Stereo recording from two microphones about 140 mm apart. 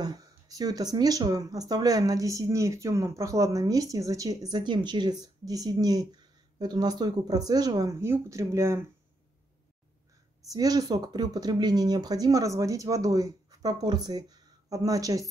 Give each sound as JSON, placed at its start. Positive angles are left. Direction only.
{"t": 0.0, "sound": "speech", "side_deg": -25}
{"t": 10.5, "sound": "speech", "side_deg": -25}